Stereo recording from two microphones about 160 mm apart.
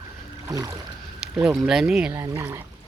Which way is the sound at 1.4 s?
5° right (ahead or behind).